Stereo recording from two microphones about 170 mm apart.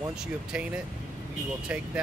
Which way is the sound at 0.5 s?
5° right (ahead or behind).